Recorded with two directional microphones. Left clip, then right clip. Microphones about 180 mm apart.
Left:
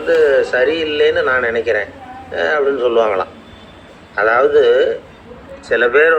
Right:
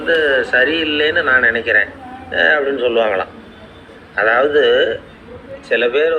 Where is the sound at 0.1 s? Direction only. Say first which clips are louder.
Left 2 dB; 20° left (ahead or behind).